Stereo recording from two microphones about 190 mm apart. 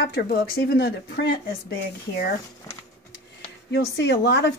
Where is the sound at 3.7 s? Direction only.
60° left (ahead or behind).